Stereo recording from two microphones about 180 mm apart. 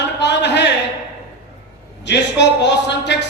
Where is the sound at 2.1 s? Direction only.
75° left (ahead or behind).